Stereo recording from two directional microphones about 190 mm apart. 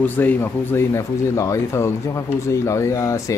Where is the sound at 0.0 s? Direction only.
10° left (ahead or behind).